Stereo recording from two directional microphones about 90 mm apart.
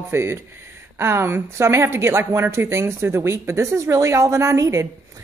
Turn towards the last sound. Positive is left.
turn(degrees=-35)  # may be behind; listen again after turning